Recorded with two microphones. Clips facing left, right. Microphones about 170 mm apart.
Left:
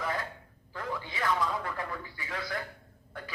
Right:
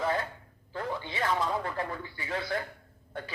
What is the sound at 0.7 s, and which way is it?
Speech, 30° right (ahead or behind).